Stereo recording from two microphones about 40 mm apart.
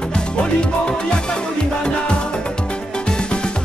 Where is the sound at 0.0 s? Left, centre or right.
Left.